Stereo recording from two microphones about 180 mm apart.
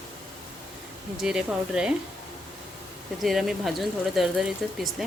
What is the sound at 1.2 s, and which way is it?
Speech, 5° right (ahead or behind).